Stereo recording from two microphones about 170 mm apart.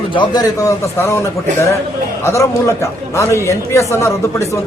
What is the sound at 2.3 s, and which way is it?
A man's voice, 15° left (ahead or behind).